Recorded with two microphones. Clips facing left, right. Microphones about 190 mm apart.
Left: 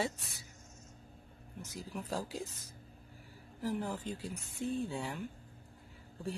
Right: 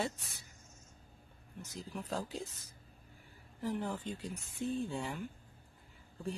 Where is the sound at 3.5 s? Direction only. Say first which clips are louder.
Left 1 dB; centre (ahead or behind).